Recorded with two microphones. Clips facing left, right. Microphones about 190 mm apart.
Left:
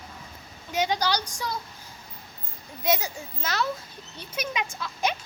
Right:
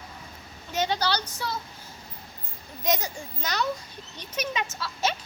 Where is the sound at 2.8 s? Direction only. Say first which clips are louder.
Left 1 dB; 10° left (ahead or behind).